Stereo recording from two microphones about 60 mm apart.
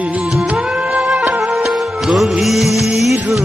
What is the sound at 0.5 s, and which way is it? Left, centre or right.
Music, centre.